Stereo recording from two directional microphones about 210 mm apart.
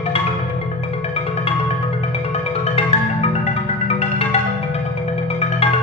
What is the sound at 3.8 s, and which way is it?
Music, 30° left (ahead or behind).